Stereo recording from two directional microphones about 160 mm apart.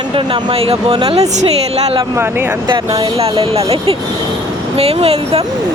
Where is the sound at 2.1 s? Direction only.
15° right (ahead or behind).